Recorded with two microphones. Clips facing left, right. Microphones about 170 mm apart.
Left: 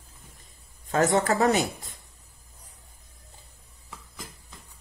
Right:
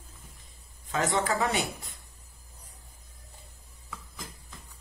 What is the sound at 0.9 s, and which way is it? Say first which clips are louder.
Speech: left 5 dB; 40° left (ahead or behind).